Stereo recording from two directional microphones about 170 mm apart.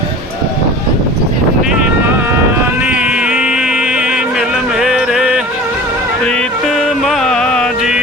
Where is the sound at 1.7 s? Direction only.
15° right (ahead or behind).